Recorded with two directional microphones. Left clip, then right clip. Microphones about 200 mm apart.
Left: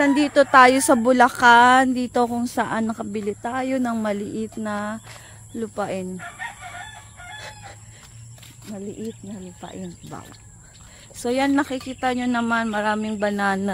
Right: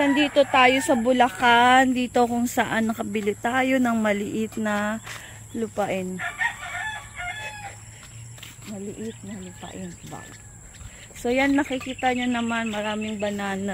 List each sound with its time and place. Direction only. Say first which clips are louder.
0.0 s speech: left 2 dB; 30° left (ahead or behind); by 6.0 s 5° left (ahead or behind)
6.1 s chicken: right 7 dB; 60° right (ahead or behind)
9.6 s speech: left 2 dB; 30° left (ahead or behind)
11.2 s speech: left 1 dB; 15° left (ahead or behind); by 13.6 s 35° left (ahead or behind)